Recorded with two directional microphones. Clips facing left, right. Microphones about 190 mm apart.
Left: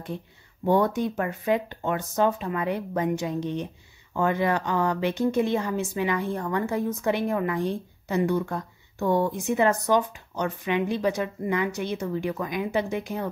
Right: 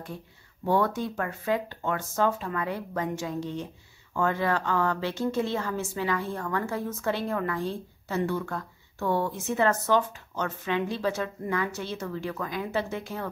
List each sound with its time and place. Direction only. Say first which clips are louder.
0.7 s speech: left 3 dB; 20° left (ahead or behind)